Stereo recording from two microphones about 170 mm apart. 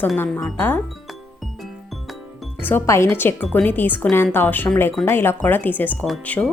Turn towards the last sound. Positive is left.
turn(degrees=5)  # may be behind; listen again after turning